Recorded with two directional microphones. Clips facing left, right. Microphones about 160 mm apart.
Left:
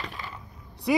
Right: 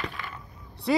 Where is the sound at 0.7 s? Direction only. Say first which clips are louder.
Even; 15° left (ahead or behind).